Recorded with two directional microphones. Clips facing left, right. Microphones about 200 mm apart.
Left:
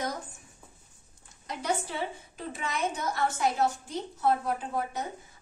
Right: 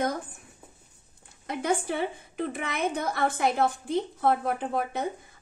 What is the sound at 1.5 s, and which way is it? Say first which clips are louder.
A woman's voice: right 4 dB; 55° right (ahead or behind).